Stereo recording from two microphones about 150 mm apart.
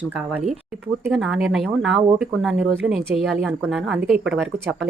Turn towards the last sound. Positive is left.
turn(degrees=0)  # may be behind; listen again after turning